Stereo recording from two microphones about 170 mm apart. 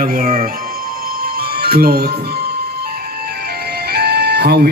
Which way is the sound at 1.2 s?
65° right (ahead or behind).